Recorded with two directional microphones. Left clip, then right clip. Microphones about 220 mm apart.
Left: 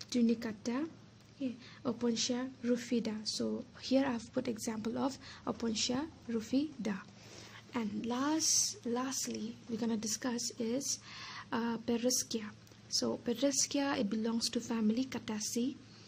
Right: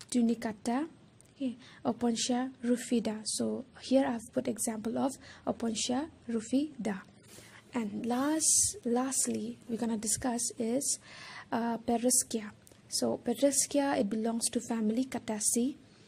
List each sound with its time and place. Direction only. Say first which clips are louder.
0.0 s a woman's voice: right 2 dB; 20° right (ahead or behind)